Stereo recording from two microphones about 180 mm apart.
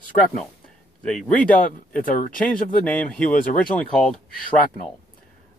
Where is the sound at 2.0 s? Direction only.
50° left (ahead or behind).